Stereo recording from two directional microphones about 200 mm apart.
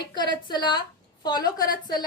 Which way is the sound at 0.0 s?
20° left (ahead or behind).